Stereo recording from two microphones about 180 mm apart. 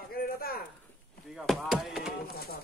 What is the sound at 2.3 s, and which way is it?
Speech, 60° left (ahead or behind).